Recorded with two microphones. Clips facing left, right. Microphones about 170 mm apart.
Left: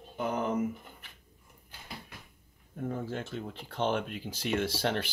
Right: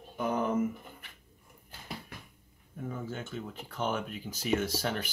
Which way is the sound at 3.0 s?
30° left (ahead or behind).